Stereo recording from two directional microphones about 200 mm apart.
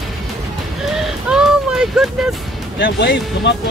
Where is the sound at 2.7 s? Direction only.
60° left (ahead or behind).